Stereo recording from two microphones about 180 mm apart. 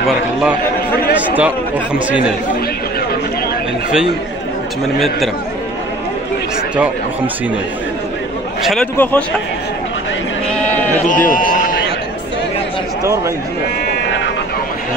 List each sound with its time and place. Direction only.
1.1 s a man's voice: 10° right (ahead or behind)
4.9 s speech: centre (ahead or behind)
8.9 s a man's voice: 10° left (ahead or behind)
10.5 s sheep: 10° left (ahead or behind)
11.1 s run: 50° left (ahead or behind)